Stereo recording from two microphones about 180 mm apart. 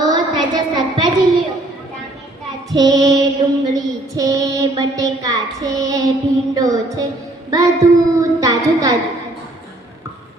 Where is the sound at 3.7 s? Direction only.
20° right (ahead or behind).